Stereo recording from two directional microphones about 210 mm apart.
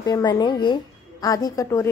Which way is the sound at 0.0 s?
20° left (ahead or behind).